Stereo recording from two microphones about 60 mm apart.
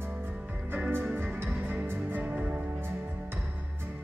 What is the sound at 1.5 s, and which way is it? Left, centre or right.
Music, right.